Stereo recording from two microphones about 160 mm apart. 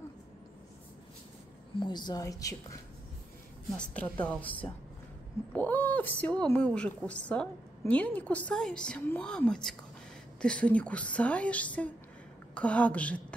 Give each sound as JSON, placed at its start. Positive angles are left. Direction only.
{"t": 1.8, "sound": "speech", "side_deg": 25}
{"t": 3.7, "sound": "a woman's voice", "side_deg": 5}